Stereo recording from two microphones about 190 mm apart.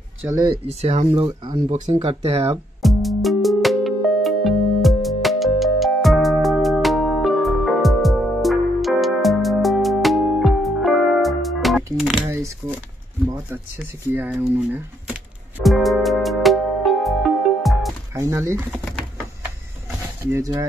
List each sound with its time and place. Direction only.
0.2 s speech: 20° right (ahead or behind)
0.7 s speech: 35° right (ahead or behind)
2.8 s music: centre (ahead or behind)
12.3 s shuffling cards: 15° right (ahead or behind)
14.1 s music: 10° right (ahead or behind)
18.1 s speech: 15° right (ahead or behind)
20.2 s speech: 15° right (ahead or behind)